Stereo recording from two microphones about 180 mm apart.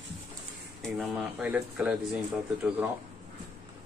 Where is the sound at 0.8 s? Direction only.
Centre (ahead or behind).